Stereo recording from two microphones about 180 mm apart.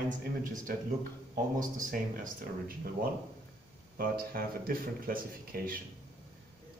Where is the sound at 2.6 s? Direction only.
55° right (ahead or behind).